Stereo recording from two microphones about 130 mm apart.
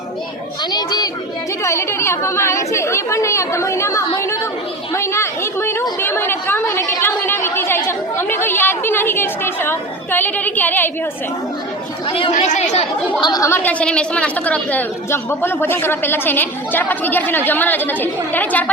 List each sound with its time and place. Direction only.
0.7 s a child's voice: 30° left (ahead or behind)
4.9 s a sound: 20° left (ahead or behind)
6.0 s chatter: 15° left (ahead or behind)
12.0 s speech: 45° left (ahead or behind)
12.3 s speech: 65° left (ahead or behind)
13.2 s a woman's voice: 30° left (ahead or behind)
13.5 s a woman's voice: 15° left (ahead or behind)